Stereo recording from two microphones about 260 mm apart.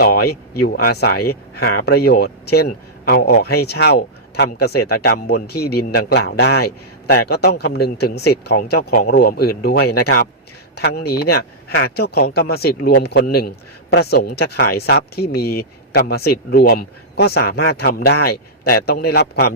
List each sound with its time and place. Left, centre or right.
0.0 s a man's voice: left